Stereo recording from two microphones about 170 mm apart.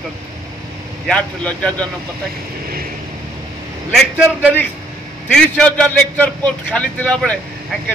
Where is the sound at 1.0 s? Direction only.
5° left (ahead or behind).